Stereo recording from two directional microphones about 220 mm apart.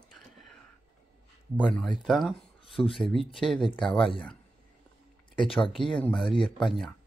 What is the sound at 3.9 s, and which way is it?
Speech, 25° left (ahead or behind).